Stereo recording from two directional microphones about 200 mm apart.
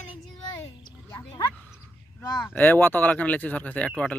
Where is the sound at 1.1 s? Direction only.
20° left (ahead or behind).